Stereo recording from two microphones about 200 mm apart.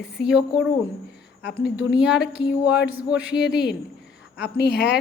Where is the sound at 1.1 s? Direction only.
55° left (ahead or behind).